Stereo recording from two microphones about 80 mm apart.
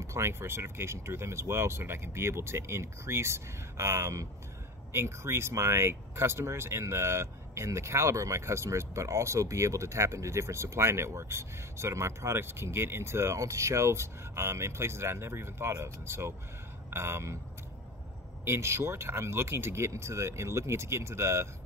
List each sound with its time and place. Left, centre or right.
0.0 s speech: right
18.4 s speech: right